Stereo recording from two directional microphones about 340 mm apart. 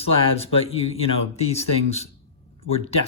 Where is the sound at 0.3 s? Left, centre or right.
Centre.